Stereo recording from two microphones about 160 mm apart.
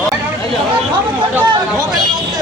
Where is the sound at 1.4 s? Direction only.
30° right (ahead or behind).